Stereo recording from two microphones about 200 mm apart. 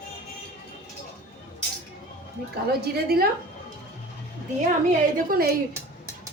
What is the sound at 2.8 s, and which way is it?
Speech, 50° right (ahead or behind).